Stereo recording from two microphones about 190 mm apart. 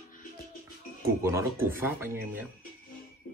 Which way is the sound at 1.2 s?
15° right (ahead or behind).